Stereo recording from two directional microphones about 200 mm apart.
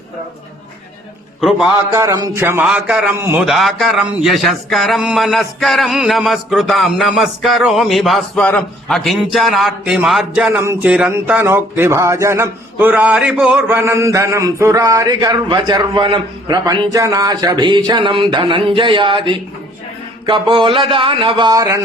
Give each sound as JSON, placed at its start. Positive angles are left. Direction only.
{"t": 1.4, "sound": "a man's voice", "side_deg": 0}
{"t": 1.9, "sound": "speech", "side_deg": -15}